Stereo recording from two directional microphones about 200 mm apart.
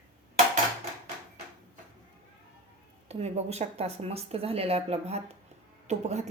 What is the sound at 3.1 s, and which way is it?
A woman's voice, 35° right (ahead or behind).